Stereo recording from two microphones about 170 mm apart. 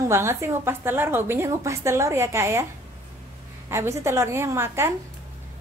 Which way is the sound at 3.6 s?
15° right (ahead or behind).